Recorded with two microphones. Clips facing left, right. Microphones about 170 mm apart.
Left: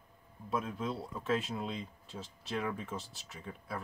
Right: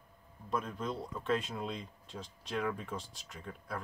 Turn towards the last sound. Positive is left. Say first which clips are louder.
# even
turn(degrees=5)  # may be behind; listen again after turning